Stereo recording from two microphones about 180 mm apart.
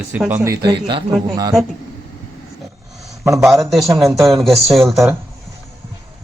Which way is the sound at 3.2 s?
15° right (ahead or behind).